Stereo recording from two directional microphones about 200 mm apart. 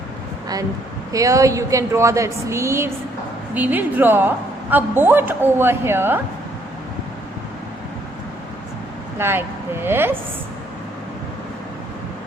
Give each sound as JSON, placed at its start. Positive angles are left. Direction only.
{"t": 1.1, "sound": "a woman's voice", "side_deg": -15}
{"t": 9.1, "sound": "a woman's voice", "side_deg": -10}